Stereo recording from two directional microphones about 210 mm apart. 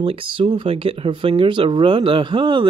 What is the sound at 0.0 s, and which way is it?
Speech, 25° right (ahead or behind).